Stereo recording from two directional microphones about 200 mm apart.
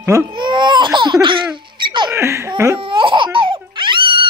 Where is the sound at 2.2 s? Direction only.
15° right (ahead or behind).